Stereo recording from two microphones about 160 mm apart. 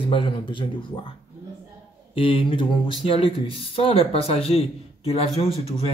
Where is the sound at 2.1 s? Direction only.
35° left (ahead or behind).